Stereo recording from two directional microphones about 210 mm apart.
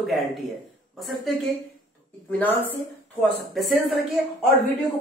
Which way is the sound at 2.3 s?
10° left (ahead or behind).